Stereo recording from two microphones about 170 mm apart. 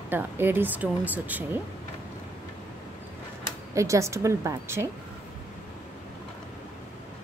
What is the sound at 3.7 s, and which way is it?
Speech, 20° right (ahead or behind).